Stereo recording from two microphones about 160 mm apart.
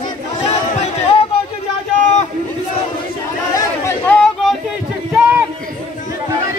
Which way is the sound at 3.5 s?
15° left (ahead or behind).